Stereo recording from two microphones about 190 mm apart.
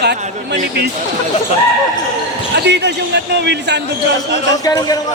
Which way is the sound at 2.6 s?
65° right (ahead or behind).